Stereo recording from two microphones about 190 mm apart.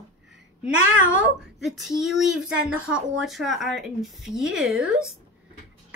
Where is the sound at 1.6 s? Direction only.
Centre (ahead or behind).